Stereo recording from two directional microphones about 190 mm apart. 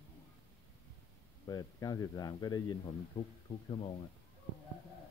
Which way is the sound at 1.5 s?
20° left (ahead or behind).